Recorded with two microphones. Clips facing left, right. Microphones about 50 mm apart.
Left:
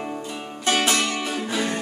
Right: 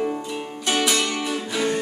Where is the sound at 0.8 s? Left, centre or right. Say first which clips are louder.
Right 1 dB; left.